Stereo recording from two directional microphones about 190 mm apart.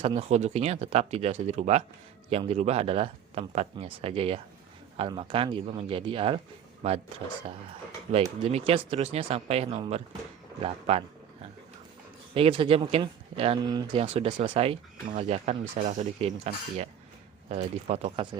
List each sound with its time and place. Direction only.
0.0 s speech: 30° right (ahead or behind)
8.1 s speech: 35° right (ahead or behind)
12.3 s speech: 30° right (ahead or behind)